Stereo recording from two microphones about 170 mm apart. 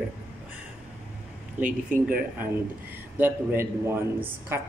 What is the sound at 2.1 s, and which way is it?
Speech, 10° right (ahead or behind).